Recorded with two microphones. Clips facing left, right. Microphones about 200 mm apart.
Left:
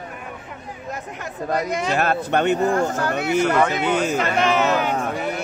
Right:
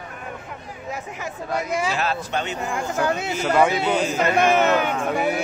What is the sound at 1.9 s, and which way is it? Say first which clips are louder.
Speech: left 5 dB; 55° left (ahead or behind).